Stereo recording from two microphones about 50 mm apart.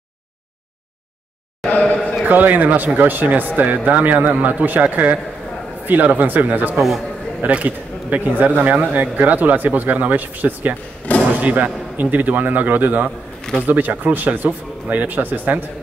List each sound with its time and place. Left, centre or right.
1.7 s a man's voice: left
2.2 s speech: right